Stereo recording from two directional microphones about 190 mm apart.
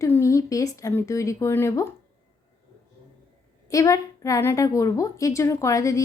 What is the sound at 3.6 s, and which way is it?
A woman's voice, 15° left (ahead or behind).